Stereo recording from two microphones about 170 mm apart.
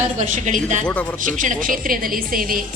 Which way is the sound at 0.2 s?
45° right (ahead or behind).